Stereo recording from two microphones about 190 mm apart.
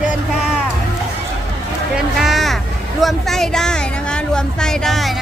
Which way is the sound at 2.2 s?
Centre (ahead or behind).